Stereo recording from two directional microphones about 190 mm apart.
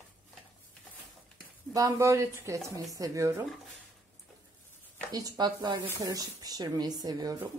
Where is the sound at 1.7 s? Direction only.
20° right (ahead or behind).